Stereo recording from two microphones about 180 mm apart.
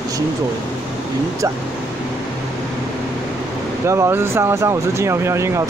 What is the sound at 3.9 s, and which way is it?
Speech, 15° right (ahead or behind).